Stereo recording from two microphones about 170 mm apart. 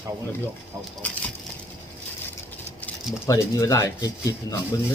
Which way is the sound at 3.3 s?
20° left (ahead or behind).